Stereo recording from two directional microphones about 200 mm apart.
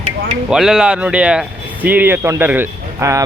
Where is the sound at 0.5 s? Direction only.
Centre (ahead or behind).